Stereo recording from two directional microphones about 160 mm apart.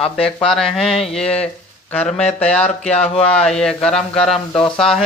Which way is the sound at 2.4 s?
5° left (ahead or behind).